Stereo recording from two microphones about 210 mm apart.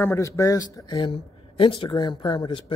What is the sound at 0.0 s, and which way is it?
A man's voice, 15° left (ahead or behind).